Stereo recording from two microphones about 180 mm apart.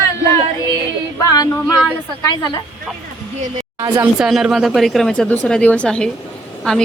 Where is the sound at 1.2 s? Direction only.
20° left (ahead or behind).